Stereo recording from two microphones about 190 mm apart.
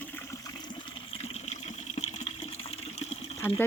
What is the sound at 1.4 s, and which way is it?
Water, 35° left (ahead or behind).